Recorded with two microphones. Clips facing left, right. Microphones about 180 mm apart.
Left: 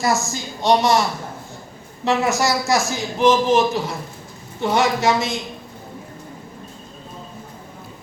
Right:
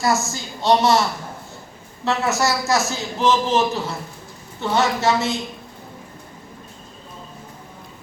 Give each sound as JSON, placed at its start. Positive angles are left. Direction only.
{"t": 0.0, "sound": "a man's voice", "side_deg": 15}
{"t": 2.0, "sound": "a man's voice", "side_deg": 15}